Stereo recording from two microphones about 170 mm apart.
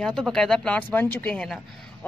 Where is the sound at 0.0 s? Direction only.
Centre (ahead or behind).